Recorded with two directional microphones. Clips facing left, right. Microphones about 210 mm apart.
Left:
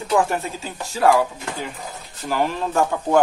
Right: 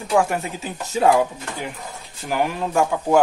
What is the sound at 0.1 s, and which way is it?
Speech, 15° right (ahead or behind).